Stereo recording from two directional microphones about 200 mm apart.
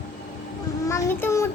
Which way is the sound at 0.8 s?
15° left (ahead or behind).